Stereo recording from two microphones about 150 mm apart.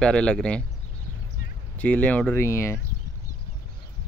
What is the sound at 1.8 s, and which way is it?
Speech, 10° left (ahead or behind).